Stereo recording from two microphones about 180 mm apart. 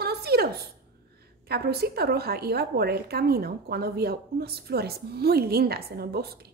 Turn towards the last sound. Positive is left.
turn(degrees=-60)  # may be behind; listen again after turning